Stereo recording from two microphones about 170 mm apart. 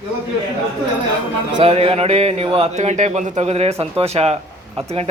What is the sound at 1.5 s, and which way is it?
Speech, 35° right (ahead or behind).